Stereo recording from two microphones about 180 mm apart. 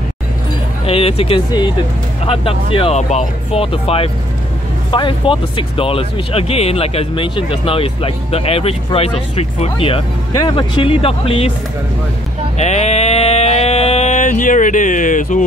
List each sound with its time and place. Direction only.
0.8 s speech: 35° left (ahead or behind)
12.5 s sheep: 40° left (ahead or behind)